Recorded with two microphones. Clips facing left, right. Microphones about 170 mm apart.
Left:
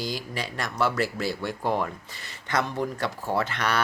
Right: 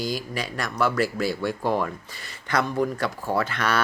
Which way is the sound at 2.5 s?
20° left (ahead or behind).